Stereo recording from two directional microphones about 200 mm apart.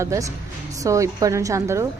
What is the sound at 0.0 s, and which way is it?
A woman's voice, 15° right (ahead or behind).